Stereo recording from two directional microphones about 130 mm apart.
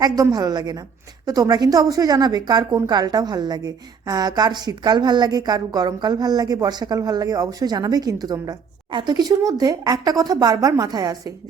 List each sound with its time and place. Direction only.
0.0 s a woman's voice: 30° right (ahead or behind)